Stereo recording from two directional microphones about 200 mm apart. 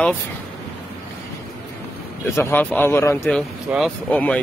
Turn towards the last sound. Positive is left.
turn(degrees=5)  # may be behind; listen again after turning